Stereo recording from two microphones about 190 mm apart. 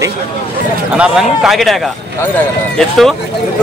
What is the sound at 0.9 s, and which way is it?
Speech, 5° right (ahead or behind).